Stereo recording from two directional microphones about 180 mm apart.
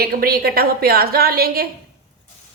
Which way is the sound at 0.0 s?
55° right (ahead or behind).